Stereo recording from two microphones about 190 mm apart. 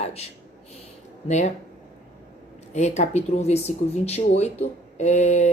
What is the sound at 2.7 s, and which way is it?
Speech, 35° left (ahead or behind).